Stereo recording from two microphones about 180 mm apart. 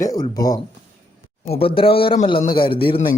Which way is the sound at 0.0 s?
20° left (ahead or behind).